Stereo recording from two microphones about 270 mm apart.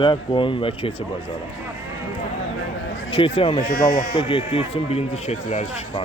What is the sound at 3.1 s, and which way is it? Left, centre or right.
Speech, centre.